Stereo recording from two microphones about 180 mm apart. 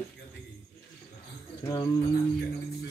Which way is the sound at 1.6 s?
20° left (ahead or behind).